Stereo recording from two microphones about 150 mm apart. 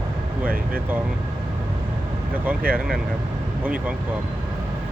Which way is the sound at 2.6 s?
75° right (ahead or behind).